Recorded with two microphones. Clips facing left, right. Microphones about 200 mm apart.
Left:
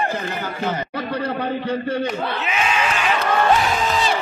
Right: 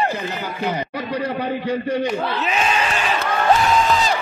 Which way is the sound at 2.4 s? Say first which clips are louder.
Even; 35° right (ahead or behind).